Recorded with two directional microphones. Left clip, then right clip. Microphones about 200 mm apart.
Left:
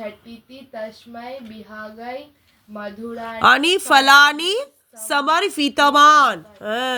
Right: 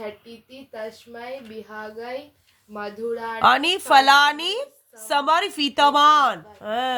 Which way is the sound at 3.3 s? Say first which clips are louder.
Left 4 dB; 10° left (ahead or behind).